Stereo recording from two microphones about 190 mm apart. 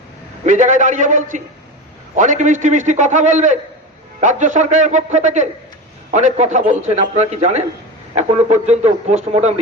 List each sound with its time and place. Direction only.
0.4 s a man's voice: 40° right (ahead or behind)